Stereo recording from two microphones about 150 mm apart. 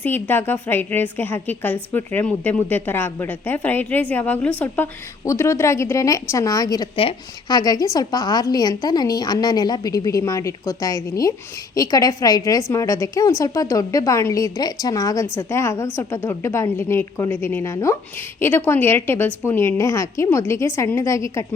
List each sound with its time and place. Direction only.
0.0 s a woman's voice: 15° left (ahead or behind)
6.9 s a woman's voice: 40° left (ahead or behind)
7.5 s a woman's voice: 25° left (ahead or behind)